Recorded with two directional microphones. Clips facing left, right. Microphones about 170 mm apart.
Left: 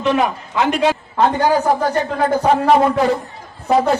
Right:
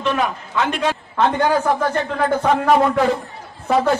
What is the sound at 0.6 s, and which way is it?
A man's voice, 35° left (ahead or behind).